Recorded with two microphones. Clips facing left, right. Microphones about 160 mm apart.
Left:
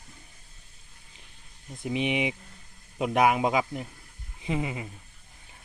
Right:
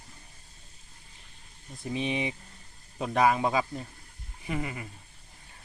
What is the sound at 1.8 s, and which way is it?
Speech, 15° left (ahead or behind).